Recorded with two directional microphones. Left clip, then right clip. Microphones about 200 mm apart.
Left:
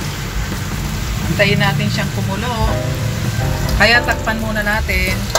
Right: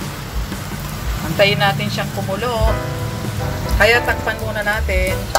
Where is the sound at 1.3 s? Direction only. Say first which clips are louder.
Right 1 dB; 45° right (ahead or behind).